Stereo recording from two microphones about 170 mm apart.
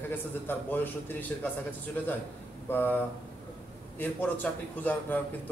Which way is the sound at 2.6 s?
10° left (ahead or behind).